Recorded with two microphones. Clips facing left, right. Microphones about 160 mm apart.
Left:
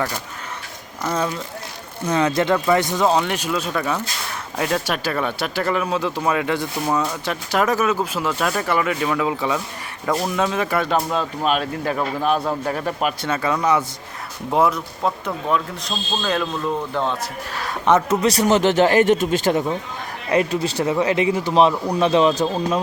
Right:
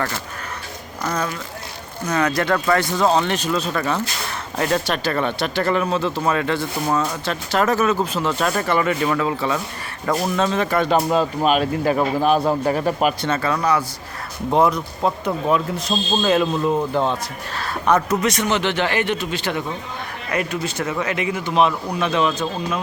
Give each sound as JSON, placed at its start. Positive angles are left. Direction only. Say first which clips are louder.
{"t": 2.0, "sound": "speech", "louder": "left 1 dB", "side_deg": 25}
{"t": 13.3, "sound": "speech", "louder": "even", "side_deg": 15}
{"t": 14.5, "sound": "speech", "louder": "right 1 dB", "side_deg": 5}
{"t": 17.5, "sound": "speech", "louder": "left 1 dB", "side_deg": 15}
{"t": 20.3, "sound": "speech", "louder": "left 5 dB", "side_deg": 30}